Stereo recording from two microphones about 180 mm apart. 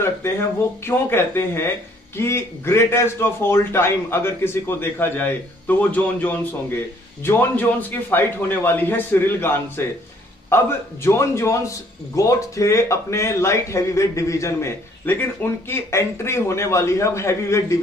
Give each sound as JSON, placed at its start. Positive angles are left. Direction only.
{"t": 0.8, "sound": "speech", "side_deg": 15}